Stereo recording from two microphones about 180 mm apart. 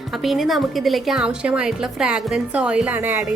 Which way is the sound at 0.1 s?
Centre (ahead or behind).